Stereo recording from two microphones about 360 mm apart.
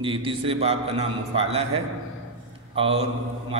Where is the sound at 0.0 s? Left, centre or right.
Centre.